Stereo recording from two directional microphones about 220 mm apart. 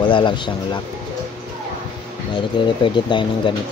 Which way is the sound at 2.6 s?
20° left (ahead or behind).